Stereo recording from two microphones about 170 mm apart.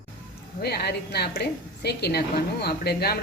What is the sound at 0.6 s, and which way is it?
A woman's voice, 70° left (ahead or behind).